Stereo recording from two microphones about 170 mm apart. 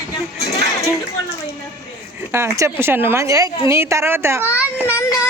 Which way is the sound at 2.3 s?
15° right (ahead or behind).